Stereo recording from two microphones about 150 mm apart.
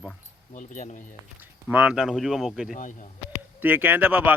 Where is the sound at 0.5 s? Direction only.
55° left (ahead or behind).